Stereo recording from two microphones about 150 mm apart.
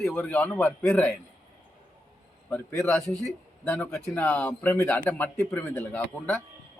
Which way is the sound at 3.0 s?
20° right (ahead or behind).